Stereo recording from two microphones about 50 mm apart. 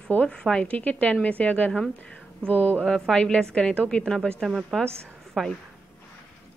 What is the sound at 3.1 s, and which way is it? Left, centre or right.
Speech, centre.